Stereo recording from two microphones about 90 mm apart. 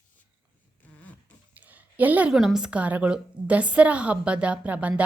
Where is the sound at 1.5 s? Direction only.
20° right (ahead or behind).